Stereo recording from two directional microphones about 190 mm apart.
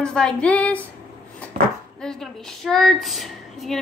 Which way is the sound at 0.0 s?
5° left (ahead or behind).